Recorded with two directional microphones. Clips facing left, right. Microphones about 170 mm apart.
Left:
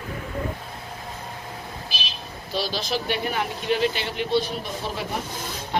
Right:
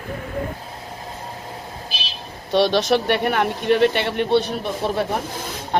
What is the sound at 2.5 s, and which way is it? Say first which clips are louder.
Speech: right 11 dB; 70° right (ahead or behind).